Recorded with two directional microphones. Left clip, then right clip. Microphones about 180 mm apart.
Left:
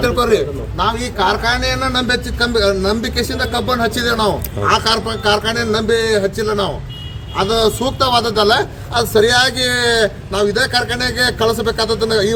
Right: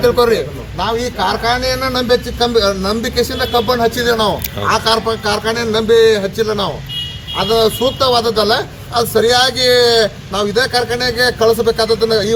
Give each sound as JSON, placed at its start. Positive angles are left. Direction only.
{"t": 1.0, "sound": "a man's voice", "side_deg": 30}